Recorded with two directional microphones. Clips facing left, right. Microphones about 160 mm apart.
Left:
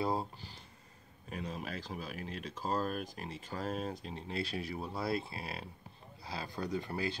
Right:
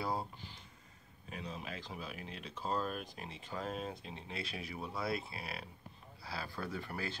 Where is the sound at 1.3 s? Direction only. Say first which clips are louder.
Left 4 dB; 45° left (ahead or behind).